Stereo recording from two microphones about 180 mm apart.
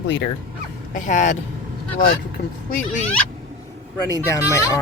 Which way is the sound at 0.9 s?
45° left (ahead or behind).